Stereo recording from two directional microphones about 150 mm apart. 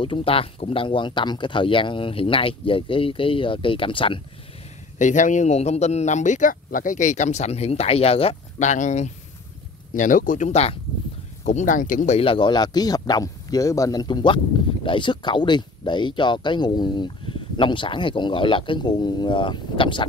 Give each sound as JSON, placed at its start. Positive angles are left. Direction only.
{"t": 0.0, "sound": "speech", "side_deg": 35}
{"t": 4.9, "sound": "speech", "side_deg": 55}
{"t": 11.4, "sound": "speech", "side_deg": 55}
{"t": 12.2, "sound": "speech", "side_deg": 35}